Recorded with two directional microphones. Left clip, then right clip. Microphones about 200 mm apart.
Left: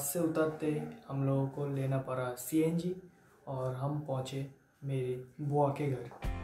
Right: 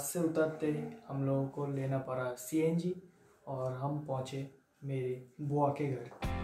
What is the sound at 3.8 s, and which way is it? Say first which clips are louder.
Speech: even; centre (ahead or behind).